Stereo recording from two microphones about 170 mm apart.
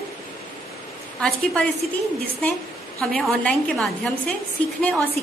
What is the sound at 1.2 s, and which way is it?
Speech, 5° left (ahead or behind).